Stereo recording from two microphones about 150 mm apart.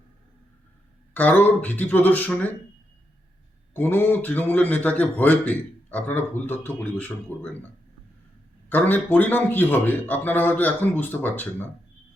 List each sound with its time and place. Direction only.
1.1 s a man's voice: 10° left (ahead or behind)
3.8 s a man's voice: 15° left (ahead or behind)
8.7 s a man's voice: 10° left (ahead or behind)